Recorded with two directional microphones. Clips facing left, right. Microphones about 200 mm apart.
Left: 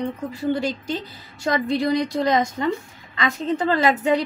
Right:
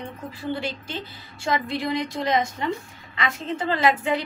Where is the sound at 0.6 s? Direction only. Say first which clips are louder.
Left 6 dB; 40° left (ahead or behind).